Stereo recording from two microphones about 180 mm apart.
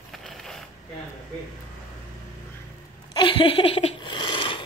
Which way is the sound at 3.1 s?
30° left (ahead or behind).